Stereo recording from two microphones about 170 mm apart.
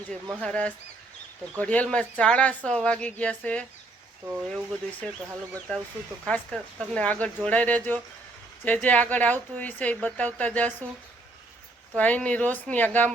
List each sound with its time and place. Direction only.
0.4 s a woman's voice: 5° left (ahead or behind)
6.2 s a woman's voice: 5° left (ahead or behind)
11.9 s a woman's voice: 10° left (ahead or behind)